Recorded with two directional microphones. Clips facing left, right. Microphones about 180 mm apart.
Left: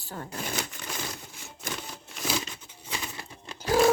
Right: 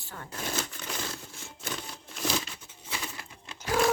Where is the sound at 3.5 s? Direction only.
35° left (ahead or behind).